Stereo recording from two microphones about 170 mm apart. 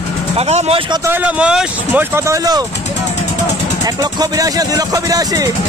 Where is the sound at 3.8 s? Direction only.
25° right (ahead or behind).